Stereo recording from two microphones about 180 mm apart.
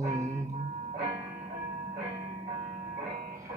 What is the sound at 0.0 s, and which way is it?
Music, 15° right (ahead or behind).